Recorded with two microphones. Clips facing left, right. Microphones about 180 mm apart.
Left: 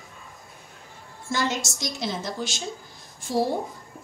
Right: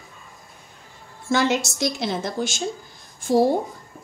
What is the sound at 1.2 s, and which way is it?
A woman's voice, 65° right (ahead or behind).